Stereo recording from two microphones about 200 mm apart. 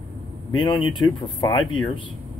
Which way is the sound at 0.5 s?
25° left (ahead or behind).